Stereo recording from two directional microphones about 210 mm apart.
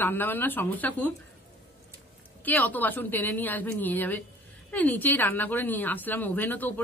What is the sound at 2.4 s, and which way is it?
Speech, 10° left (ahead or behind).